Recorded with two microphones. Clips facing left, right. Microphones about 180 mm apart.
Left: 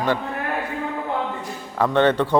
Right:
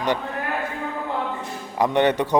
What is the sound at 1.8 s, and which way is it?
Speech, 15° right (ahead or behind).